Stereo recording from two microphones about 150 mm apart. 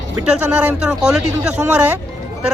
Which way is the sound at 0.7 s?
5° right (ahead or behind).